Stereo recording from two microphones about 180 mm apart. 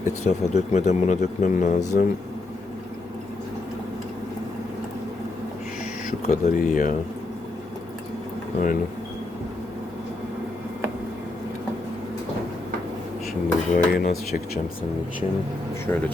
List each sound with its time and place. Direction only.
0.3 s speech: 40° left (ahead or behind)
1.9 s speech: 55° left (ahead or behind)
6.2 s speech: 45° left (ahead or behind)
8.5 s speech: 50° left (ahead or behind)
13.7 s speech: 55° left (ahead or behind)
15.9 s speech: 15° left (ahead or behind)